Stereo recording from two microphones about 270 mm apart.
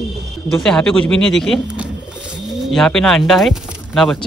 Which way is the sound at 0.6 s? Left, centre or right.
Centre.